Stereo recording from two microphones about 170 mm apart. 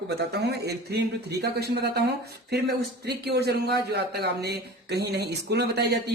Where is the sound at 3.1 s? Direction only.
75° right (ahead or behind).